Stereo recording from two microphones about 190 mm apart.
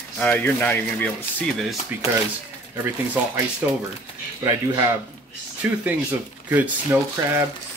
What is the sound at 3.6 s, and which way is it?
Speech, 10° right (ahead or behind).